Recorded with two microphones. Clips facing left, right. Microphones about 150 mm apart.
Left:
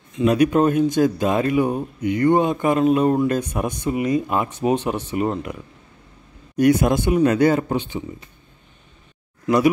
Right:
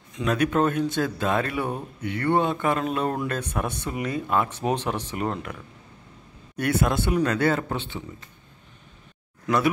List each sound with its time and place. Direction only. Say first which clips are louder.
0.1 s speech: left 7 dB; 10° left (ahead or behind)